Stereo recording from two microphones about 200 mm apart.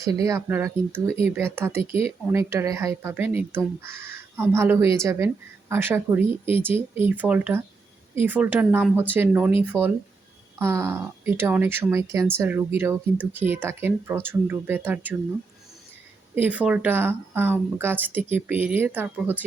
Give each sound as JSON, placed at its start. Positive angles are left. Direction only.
{"t": 0.0, "sound": "speech", "side_deg": -15}
{"t": 1.9, "sound": "speech", "side_deg": 30}
{"t": 2.2, "sound": "speech", "side_deg": -15}
{"t": 16.3, "sound": "speech", "side_deg": -10}